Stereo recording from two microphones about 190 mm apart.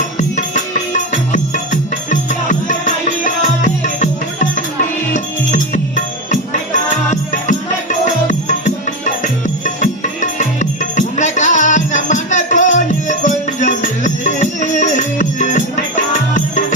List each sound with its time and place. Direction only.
0.2 s music: 40° left (ahead or behind)
7.1 s music: 40° left (ahead or behind)